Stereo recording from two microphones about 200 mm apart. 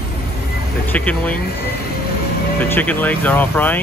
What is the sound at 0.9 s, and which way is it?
Speech, 5° left (ahead or behind).